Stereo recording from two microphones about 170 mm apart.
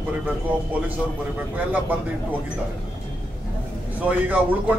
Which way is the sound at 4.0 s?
10° right (ahead or behind).